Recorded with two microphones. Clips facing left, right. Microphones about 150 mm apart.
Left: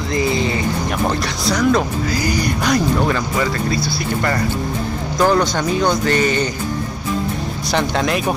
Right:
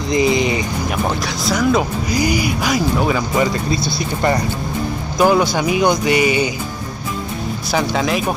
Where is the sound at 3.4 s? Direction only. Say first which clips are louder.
Right 1 dB; 20° right (ahead or behind).